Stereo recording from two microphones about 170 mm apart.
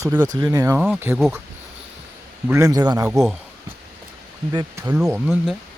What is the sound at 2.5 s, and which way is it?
Speech, 20° right (ahead or behind).